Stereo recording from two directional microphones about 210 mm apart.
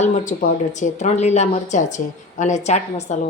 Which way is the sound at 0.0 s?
35° left (ahead or behind).